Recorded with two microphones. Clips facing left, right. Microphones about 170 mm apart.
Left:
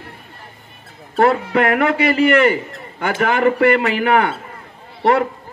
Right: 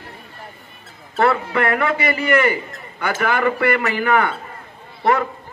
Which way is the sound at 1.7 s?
55° left (ahead or behind).